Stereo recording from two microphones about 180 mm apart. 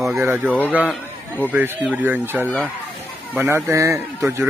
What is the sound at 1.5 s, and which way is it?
Speech, 10° right (ahead or behind).